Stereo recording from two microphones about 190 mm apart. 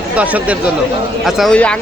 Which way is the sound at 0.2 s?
5° right (ahead or behind).